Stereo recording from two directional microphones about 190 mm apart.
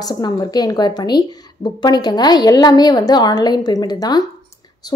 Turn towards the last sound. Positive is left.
turn(degrees=20)  # may be behind; listen again after turning